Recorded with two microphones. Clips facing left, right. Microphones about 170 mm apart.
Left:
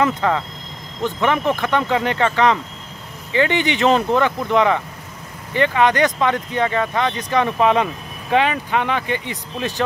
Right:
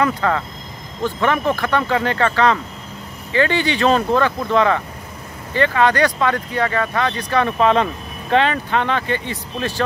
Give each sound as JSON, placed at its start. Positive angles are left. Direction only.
{"t": 0.0, "sound": "speech", "side_deg": 15}